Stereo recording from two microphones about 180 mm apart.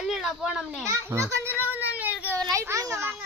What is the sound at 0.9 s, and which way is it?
Speech, 15° right (ahead or behind).